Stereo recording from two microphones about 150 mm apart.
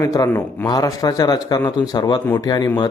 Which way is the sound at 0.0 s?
20° left (ahead or behind).